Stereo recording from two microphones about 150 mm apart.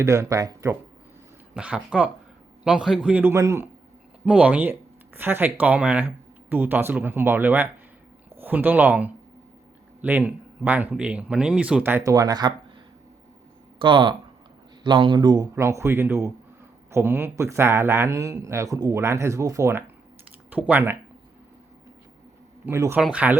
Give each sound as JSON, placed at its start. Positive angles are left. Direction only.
{"t": 0.0, "sound": "a man's voice", "side_deg": -20}
{"t": 1.5, "sound": "speech", "side_deg": -5}
{"t": 4.3, "sound": "speech", "side_deg": -10}
{"t": 12.1, "sound": "a man's voice", "side_deg": -25}
{"t": 13.7, "sound": "a man's voice", "side_deg": -35}
{"t": 22.6, "sound": "speech", "side_deg": -15}